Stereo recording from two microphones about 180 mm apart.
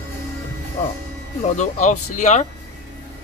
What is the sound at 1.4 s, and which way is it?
Speech, 40° left (ahead or behind).